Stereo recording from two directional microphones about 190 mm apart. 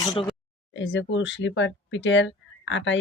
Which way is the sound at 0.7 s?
70° left (ahead or behind).